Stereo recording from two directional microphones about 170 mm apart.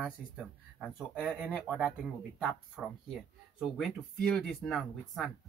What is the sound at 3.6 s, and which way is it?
Speech, centre (ahead or behind).